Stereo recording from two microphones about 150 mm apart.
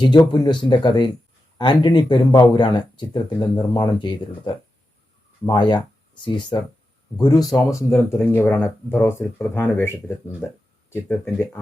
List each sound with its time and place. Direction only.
0.0 s speech: 30° left (ahead or behind)